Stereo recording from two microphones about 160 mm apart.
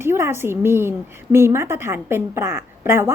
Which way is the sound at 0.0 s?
15° right (ahead or behind).